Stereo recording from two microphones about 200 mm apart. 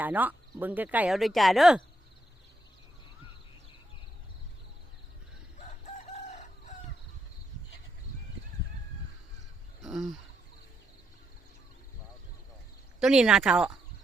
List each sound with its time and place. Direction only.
0.0 s speech: 10° right (ahead or behind)
5.6 s chicken: 35° left (ahead or behind)
9.8 s a sound: centre (ahead or behind)
13.0 s speech: 5° right (ahead or behind)